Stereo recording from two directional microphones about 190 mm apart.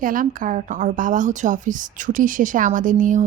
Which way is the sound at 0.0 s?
45° right (ahead or behind).